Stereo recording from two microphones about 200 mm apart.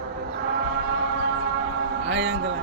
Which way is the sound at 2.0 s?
70° right (ahead or behind).